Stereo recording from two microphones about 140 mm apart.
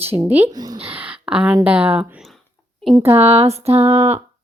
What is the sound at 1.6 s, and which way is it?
Speech, 10° right (ahead or behind).